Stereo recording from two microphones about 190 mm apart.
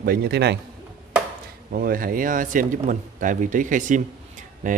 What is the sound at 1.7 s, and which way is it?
Speech, 50° right (ahead or behind).